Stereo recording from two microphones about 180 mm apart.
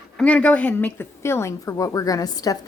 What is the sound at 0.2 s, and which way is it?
A woman's voice, 5° left (ahead or behind).